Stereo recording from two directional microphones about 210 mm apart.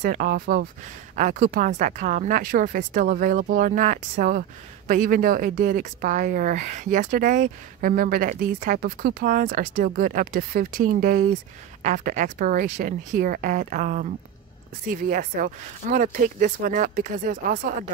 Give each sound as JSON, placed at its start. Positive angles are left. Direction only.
{"t": 0.0, "sound": "a woman's voice", "side_deg": -45}